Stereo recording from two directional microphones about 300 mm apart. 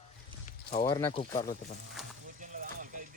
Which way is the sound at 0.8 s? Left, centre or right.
Centre.